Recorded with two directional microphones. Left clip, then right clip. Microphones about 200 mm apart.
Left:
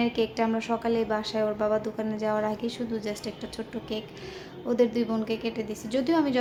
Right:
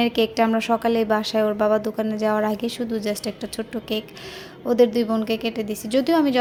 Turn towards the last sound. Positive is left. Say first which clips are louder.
# right 6 dB
turn(degrees=-30)  # may be behind; listen again after turning